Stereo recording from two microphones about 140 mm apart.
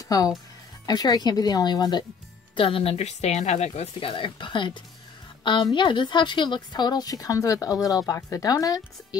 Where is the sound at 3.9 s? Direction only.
40° left (ahead or behind).